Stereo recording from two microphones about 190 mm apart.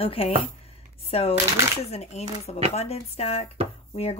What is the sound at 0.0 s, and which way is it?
Speech, 30° left (ahead or behind).